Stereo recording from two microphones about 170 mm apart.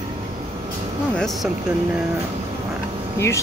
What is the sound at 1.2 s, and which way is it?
Speech, centre (ahead or behind).